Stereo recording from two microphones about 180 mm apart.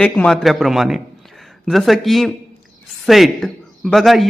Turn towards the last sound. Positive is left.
turn(degrees=0)  # may be behind; listen again after turning